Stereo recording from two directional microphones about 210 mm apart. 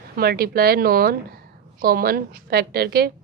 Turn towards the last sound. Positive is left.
turn(degrees=-50)  # may be behind; listen again after turning